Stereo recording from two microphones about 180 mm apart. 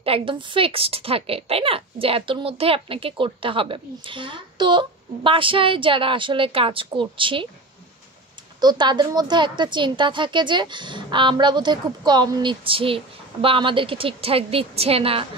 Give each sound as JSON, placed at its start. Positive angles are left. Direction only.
{"t": 0.0, "sound": "a woman's voice", "side_deg": -30}
{"t": 8.5, "sound": "a woman's voice", "side_deg": -25}